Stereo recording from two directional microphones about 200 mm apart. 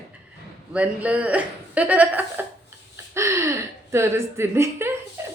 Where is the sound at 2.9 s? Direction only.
15° right (ahead or behind).